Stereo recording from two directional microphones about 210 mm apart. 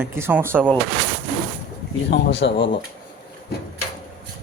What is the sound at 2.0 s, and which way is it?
Speech, 60° left (ahead or behind).